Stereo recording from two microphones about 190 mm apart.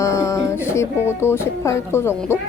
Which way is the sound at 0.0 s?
15° left (ahead or behind).